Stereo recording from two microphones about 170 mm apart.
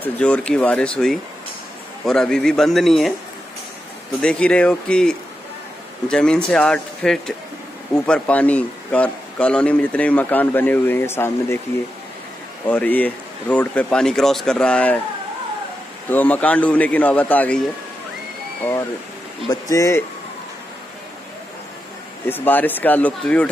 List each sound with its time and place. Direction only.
0.0 s speech: 5° left (ahead or behind)
4.2 s speech: 5° left (ahead or behind)
12.6 s speech: 10° left (ahead or behind)
16.1 s speech: 10° left (ahead or behind)
18.6 s speech: 15° left (ahead or behind)
22.2 s speech: 10° left (ahead or behind)